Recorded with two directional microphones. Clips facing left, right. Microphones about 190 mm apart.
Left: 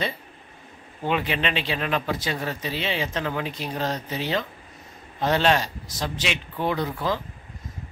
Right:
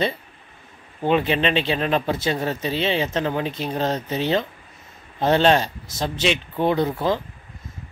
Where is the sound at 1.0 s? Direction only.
30° right (ahead or behind).